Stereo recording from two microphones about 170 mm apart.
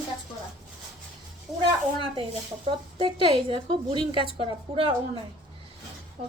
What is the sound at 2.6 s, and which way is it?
A woman's voice, 30° right (ahead or behind).